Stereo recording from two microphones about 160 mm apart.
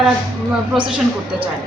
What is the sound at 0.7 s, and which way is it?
Speech, centre (ahead or behind).